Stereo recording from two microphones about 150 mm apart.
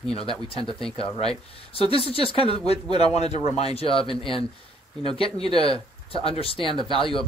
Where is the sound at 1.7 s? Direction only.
40° left (ahead or behind).